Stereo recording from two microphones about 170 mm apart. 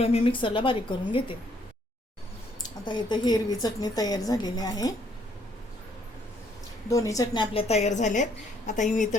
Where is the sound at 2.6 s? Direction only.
25° left (ahead or behind).